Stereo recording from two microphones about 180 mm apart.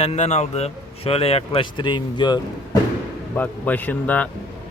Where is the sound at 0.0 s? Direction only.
40° left (ahead or behind).